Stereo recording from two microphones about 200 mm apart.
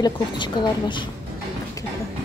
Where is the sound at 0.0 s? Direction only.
25° left (ahead or behind).